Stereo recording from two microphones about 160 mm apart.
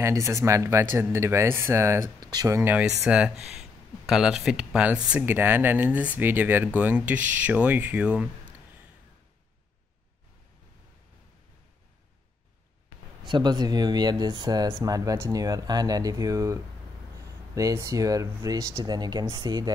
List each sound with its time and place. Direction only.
0.0 s speech: 20° right (ahead or behind)
13.2 s speech: 25° right (ahead or behind)